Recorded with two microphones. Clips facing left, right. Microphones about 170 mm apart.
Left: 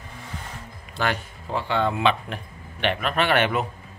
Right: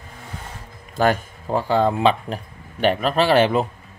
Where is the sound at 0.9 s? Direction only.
45° right (ahead or behind).